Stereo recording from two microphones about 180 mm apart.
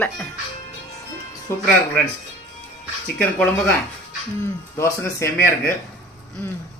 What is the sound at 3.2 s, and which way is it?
Speech, 5° left (ahead or behind).